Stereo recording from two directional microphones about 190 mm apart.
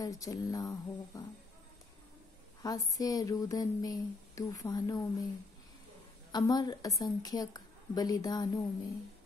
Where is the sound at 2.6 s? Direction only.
20° left (ahead or behind).